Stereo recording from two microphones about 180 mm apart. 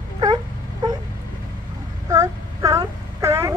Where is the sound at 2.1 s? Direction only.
20° right (ahead or behind).